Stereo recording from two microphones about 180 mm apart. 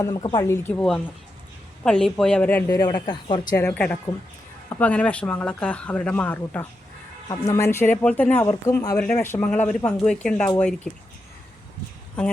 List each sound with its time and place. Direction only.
0.0 s speech: 25° left (ahead or behind)
3.5 s speech: 10° left (ahead or behind)